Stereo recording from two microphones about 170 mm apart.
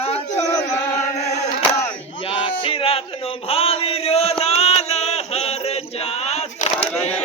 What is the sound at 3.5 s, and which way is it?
Chant, 35° left (ahead or behind).